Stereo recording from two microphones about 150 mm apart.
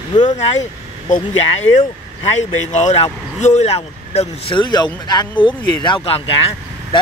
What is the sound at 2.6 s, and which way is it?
Speech, 50° left (ahead or behind).